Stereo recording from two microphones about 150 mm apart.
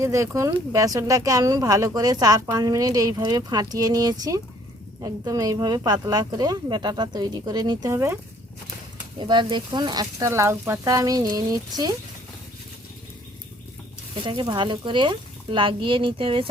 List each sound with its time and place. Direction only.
0.0 s speech: 20° right (ahead or behind)
9.1 s speech: 30° right (ahead or behind)
14.3 s speech: 35° right (ahead or behind)